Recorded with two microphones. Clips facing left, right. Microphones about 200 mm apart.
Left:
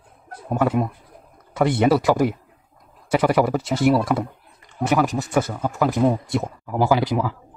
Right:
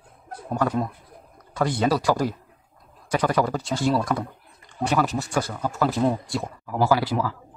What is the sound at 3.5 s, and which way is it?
Speech, 20° left (ahead or behind).